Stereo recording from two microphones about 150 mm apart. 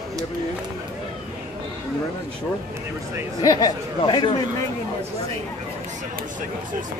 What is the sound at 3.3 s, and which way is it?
Speech, 30° left (ahead or behind).